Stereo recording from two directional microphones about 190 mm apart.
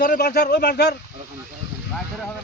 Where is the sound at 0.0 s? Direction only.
50° left (ahead or behind).